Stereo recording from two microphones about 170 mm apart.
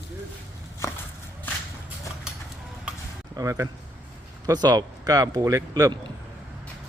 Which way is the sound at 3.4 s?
20° right (ahead or behind).